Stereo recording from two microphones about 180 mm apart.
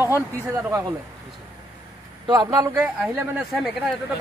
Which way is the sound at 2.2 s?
20° right (ahead or behind).